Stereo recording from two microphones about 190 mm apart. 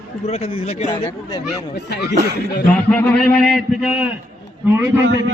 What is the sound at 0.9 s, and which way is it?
Speech, 20° left (ahead or behind).